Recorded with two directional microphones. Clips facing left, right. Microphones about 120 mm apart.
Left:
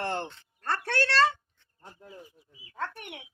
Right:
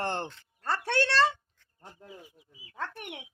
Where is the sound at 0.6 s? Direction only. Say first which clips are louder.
Even; 10° right (ahead or behind).